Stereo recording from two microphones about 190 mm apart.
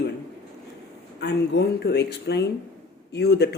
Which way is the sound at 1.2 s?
60° left (ahead or behind).